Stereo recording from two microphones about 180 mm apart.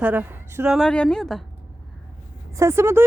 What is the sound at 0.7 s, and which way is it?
Speech, 5° left (ahead or behind).